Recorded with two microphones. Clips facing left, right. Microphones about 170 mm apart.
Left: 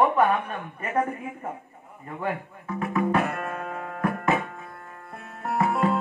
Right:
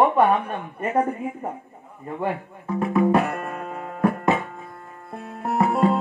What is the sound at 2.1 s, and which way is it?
Music, 30° right (ahead or behind).